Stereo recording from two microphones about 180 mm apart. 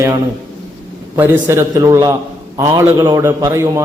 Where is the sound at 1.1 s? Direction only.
15° right (ahead or behind).